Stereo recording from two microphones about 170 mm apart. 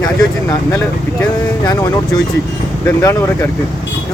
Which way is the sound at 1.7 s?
25° left (ahead or behind).